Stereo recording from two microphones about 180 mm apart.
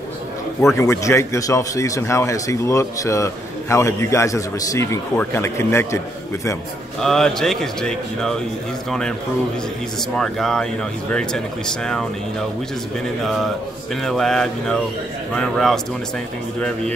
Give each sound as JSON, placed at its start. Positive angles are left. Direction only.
{"t": 0.7, "sound": "speech", "side_deg": 15}
{"t": 7.0, "sound": "speech", "side_deg": 0}
{"t": 10.1, "sound": "speech", "side_deg": 5}
{"t": 13.2, "sound": "speech", "side_deg": 0}